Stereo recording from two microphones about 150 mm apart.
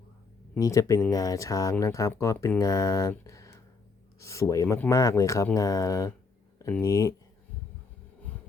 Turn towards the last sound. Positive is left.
turn(degrees=20)  # may be behind; listen again after turning